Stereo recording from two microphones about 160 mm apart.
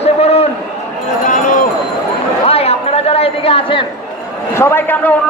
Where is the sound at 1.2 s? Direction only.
55° left (ahead or behind).